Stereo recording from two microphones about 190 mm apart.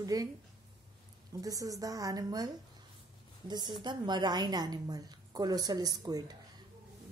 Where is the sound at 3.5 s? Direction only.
25° right (ahead or behind).